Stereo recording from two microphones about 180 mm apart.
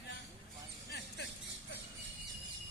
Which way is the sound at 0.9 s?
70° left (ahead or behind).